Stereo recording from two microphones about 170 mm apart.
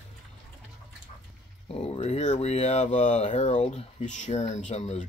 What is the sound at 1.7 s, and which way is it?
Speech, 40° left (ahead or behind).